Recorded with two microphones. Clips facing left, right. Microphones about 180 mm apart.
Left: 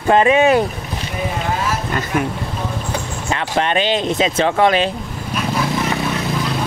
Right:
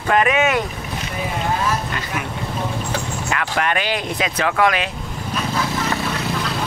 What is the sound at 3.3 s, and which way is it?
Speech, 25° left (ahead or behind).